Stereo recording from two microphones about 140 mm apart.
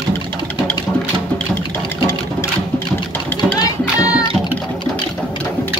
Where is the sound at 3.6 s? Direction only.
25° left (ahead or behind).